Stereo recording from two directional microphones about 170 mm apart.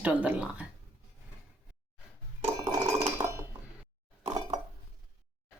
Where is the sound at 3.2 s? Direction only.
30° right (ahead or behind).